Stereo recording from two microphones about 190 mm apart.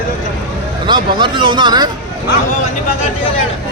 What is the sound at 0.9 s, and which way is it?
Speech, 25° right (ahead or behind).